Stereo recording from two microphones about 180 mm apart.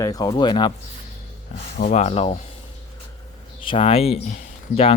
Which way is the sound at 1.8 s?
40° left (ahead or behind).